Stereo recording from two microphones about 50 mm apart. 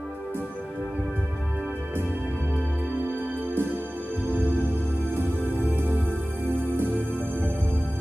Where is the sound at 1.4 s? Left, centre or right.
Right.